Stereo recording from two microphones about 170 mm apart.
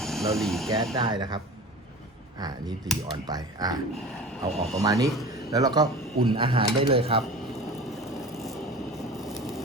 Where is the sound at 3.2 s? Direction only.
25° right (ahead or behind).